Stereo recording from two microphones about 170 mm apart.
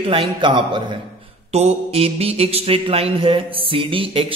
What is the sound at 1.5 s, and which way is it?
Mantra, 40° right (ahead or behind).